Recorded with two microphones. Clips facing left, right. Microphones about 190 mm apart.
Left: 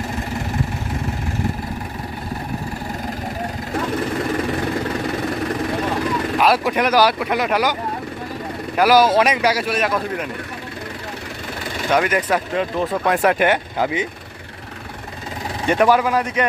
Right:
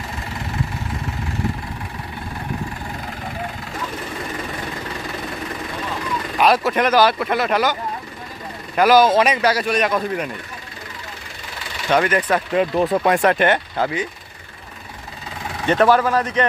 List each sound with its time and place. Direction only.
6.4 s speech: 10° left (ahead or behind)
8.7 s speech: 10° left (ahead or behind)
11.9 s speech: 10° left (ahead or behind)
12.5 s speech: 5° right (ahead or behind)
13.2 s speech: 10° left (ahead or behind)
15.6 s speech: 10° left (ahead or behind)